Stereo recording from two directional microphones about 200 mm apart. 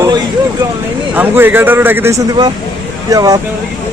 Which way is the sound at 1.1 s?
10° right (ahead or behind).